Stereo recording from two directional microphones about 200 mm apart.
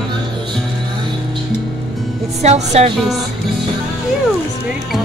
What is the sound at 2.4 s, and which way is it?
Speech, 35° right (ahead or behind).